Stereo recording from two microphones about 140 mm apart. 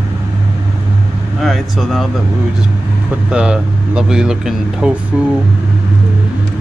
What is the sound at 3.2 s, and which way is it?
Speech, 5° right (ahead or behind).